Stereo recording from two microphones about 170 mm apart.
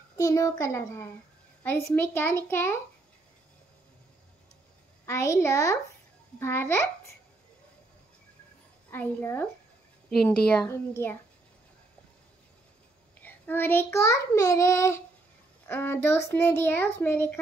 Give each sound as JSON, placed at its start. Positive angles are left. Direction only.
{"t": 0.1, "sound": "child singing", "side_deg": 20}
{"t": 5.0, "sound": "child singing", "side_deg": 15}
{"t": 8.9, "sound": "child singing", "side_deg": 10}
{"t": 10.0, "sound": "speech", "side_deg": 5}
{"t": 10.7, "sound": "child singing", "side_deg": 15}
{"t": 13.2, "sound": "child singing", "side_deg": 10}